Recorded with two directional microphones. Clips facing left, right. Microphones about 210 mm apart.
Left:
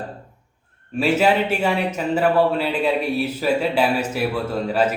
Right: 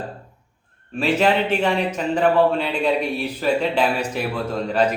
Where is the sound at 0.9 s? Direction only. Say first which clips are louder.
Left 1 dB; 5° left (ahead or behind).